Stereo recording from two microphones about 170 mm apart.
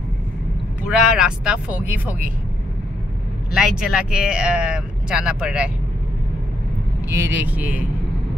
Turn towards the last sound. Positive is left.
turn(degrees=-10)  # may be behind; listen again after turning